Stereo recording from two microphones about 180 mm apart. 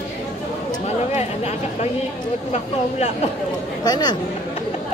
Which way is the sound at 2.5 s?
40° left (ahead or behind).